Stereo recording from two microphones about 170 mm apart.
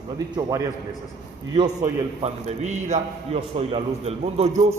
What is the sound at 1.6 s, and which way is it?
A man's voice, 40° right (ahead or behind).